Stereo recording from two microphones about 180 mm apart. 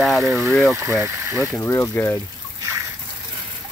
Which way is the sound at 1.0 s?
15° right (ahead or behind).